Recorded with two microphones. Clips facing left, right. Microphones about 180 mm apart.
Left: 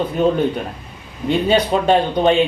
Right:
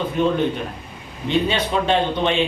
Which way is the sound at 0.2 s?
40° left (ahead or behind).